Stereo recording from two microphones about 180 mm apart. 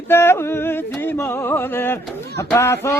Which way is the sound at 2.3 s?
15° left (ahead or behind).